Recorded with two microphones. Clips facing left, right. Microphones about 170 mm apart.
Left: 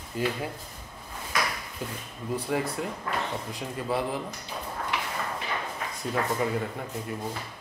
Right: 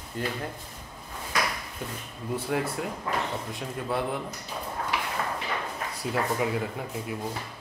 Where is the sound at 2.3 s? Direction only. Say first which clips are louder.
Even; centre (ahead or behind).